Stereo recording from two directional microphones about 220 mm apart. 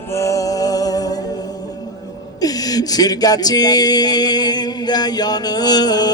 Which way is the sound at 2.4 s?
15° left (ahead or behind).